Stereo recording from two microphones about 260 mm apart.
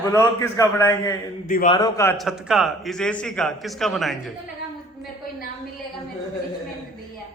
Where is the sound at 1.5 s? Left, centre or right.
Left.